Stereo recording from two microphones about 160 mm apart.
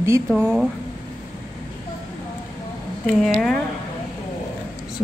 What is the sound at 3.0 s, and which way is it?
Speech, centre (ahead or behind).